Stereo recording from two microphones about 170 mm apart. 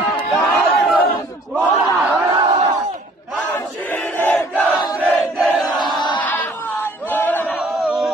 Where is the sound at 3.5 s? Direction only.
10° left (ahead or behind).